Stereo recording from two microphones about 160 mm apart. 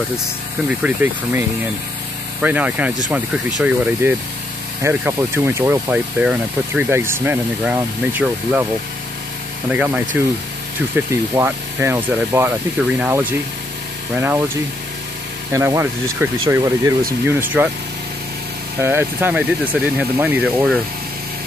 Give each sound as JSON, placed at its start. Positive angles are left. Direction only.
{"t": 0.7, "sound": "speech", "side_deg": -10}
{"t": 2.4, "sound": "speech", "side_deg": -10}
{"t": 9.7, "sound": "speech", "side_deg": -10}
{"t": 18.8, "sound": "speech", "side_deg": -15}